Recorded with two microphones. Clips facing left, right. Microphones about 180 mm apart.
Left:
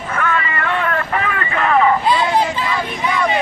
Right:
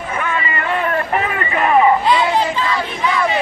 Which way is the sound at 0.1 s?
20° right (ahead or behind).